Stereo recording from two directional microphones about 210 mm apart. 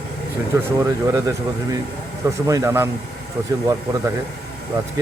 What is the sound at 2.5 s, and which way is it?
Speech, 15° right (ahead or behind).